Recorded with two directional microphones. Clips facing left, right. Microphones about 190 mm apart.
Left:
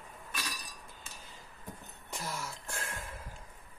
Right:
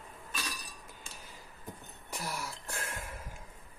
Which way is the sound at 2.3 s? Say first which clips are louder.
Even; 15° right (ahead or behind).